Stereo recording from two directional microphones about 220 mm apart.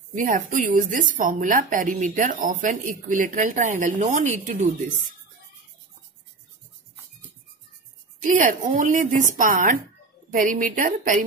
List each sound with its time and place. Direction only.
0.1 s a woman's voice: 35° right (ahead or behind)
8.2 s a woman's voice: 35° right (ahead or behind)